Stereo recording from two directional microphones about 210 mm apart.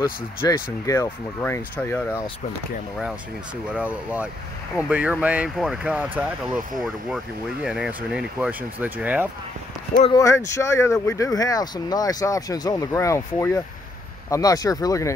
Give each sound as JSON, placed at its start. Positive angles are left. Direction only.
{"t": 0.8, "sound": "speech", "side_deg": 10}
{"t": 3.7, "sound": "speech", "side_deg": -5}
{"t": 9.9, "sound": "speech", "side_deg": 20}